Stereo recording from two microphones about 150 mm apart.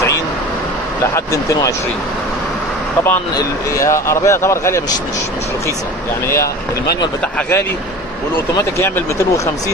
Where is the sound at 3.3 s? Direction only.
20° left (ahead or behind).